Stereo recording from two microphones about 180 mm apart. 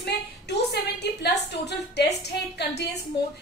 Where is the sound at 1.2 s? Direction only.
70° left (ahead or behind).